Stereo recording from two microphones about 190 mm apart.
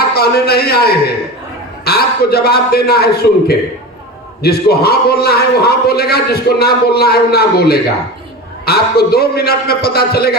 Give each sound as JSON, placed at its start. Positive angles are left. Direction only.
{"t": 0.1, "sound": "a man's voice", "side_deg": 55}